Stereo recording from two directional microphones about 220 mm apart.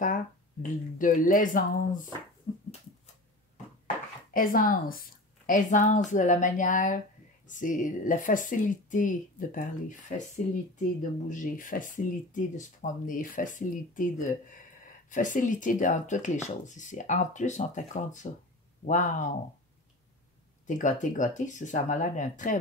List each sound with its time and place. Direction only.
0.0 s speech: 35° left (ahead or behind)
3.8 s dishes: 40° left (ahead or behind)
5.5 s speech: 35° left (ahead or behind)
11.2 s speech: 35° left (ahead or behind)
20.6 s speech: 35° left (ahead or behind)